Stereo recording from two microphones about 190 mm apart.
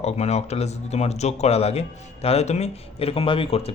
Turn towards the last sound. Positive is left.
turn(degrees=30)  # may be behind; listen again after turning